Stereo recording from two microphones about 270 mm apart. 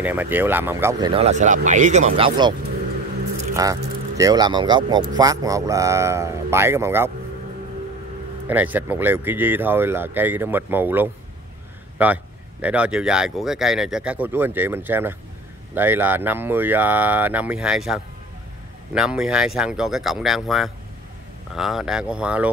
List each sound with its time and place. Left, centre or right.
0.0 s speech: centre
3.6 s speech: centre
8.5 s speech: centre